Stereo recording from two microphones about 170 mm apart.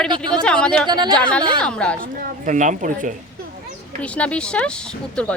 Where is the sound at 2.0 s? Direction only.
50° right (ahead or behind).